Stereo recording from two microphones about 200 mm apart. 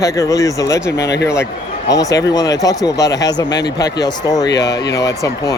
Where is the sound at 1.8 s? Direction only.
15° left (ahead or behind).